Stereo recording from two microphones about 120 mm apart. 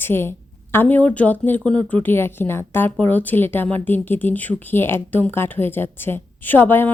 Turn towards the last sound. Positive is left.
turn(degrees=15)  # may be behind; listen again after turning